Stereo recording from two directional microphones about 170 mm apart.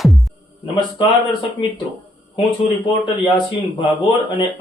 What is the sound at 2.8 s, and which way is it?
A man's voice, 30° left (ahead or behind).